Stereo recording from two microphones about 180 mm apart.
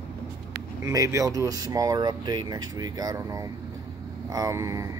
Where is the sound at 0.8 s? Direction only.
20° right (ahead or behind).